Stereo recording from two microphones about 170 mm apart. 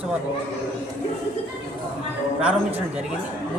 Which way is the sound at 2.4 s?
5° right (ahead or behind).